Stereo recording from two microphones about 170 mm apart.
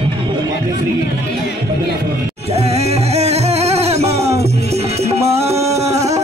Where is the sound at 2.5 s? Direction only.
40° right (ahead or behind).